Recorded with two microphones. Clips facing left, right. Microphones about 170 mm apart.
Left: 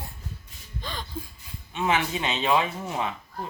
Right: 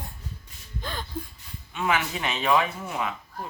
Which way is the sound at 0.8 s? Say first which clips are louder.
Right 1 dB; 5° right (ahead or behind).